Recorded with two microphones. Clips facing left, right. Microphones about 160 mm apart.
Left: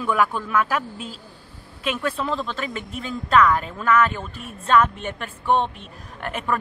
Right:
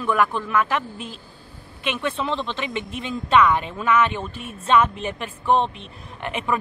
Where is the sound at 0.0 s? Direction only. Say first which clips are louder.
Even; 5° left (ahead or behind).